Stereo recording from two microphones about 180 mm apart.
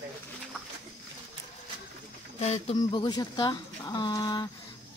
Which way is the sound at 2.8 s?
25° left (ahead or behind).